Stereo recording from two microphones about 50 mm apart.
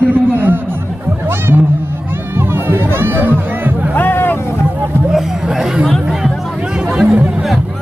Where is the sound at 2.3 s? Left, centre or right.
Right.